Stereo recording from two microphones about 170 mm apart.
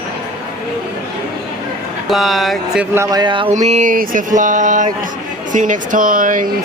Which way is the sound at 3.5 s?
45° right (ahead or behind).